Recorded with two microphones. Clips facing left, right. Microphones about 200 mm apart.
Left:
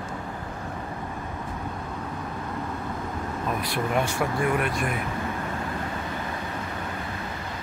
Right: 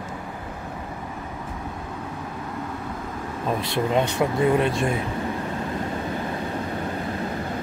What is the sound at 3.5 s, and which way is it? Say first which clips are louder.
Speech: right 4 dB; 25° right (ahead or behind).